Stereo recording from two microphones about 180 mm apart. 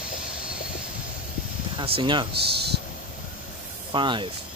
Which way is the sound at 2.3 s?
65° right (ahead or behind).